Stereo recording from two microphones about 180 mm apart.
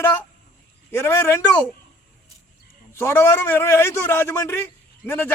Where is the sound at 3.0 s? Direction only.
15° left (ahead or behind).